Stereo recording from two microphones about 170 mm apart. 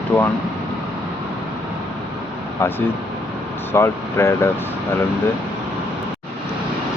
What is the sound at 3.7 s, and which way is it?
Speech, 15° left (ahead or behind).